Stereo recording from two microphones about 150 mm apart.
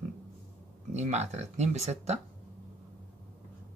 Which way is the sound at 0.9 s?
50° right (ahead or behind).